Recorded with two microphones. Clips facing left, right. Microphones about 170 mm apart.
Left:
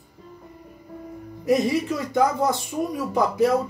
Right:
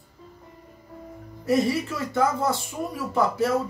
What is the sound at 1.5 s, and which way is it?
Speech, 15° left (ahead or behind).